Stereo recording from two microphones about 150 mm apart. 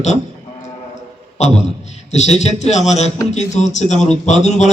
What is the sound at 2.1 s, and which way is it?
A man's voice, 50° left (ahead or behind).